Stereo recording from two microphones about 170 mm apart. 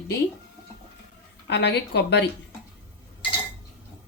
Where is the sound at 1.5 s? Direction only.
85° left.